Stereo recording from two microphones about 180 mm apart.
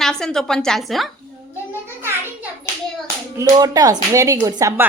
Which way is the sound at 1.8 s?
15° right (ahead or behind).